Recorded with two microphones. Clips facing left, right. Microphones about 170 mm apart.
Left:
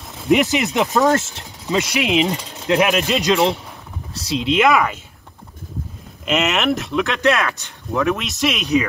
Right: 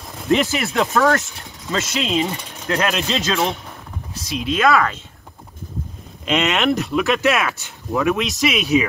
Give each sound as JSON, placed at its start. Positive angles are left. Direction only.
{"t": 0.3, "sound": "speech", "side_deg": 15}
{"t": 1.7, "sound": "speech", "side_deg": 15}
{"t": 6.2, "sound": "speech", "side_deg": 0}